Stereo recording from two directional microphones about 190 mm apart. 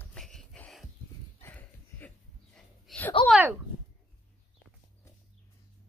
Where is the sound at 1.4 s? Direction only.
10° left (ahead or behind).